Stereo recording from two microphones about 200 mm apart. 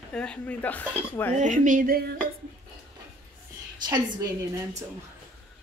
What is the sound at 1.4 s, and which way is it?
Speech, 40° right (ahead or behind).